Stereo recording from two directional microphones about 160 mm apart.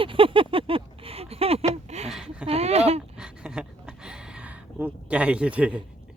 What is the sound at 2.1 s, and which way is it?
Speech, 5° right (ahead or behind).